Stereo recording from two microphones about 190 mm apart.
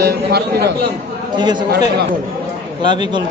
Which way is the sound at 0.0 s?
60° right (ahead or behind).